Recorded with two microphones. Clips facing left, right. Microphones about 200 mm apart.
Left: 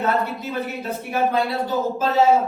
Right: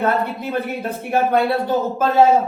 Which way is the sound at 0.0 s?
55° right (ahead or behind).